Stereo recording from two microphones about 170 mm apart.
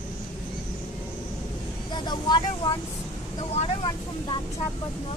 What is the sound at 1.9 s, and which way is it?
Speech, 25° left (ahead or behind).